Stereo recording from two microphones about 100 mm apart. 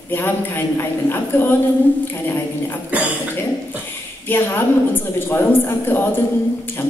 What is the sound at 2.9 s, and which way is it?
Cough, 15° right (ahead or behind).